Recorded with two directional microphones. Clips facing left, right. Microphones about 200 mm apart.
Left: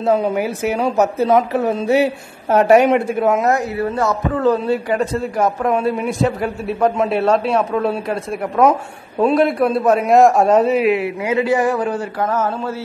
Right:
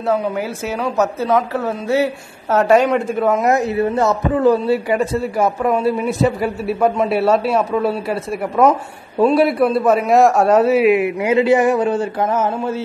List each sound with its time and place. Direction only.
0.0 s a woman's voice: 20° left (ahead or behind)
3.4 s a man's voice: 20° right (ahead or behind)
4.4 s a man's voice: 10° right (ahead or behind)
11.2 s a man's voice: 25° right (ahead or behind)